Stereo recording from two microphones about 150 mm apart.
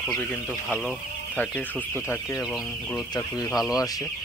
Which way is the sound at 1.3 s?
10° left (ahead or behind).